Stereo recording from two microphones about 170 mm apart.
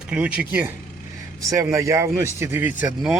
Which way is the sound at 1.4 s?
20° right (ahead or behind).